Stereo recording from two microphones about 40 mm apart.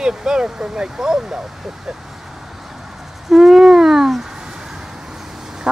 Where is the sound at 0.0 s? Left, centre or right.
Centre.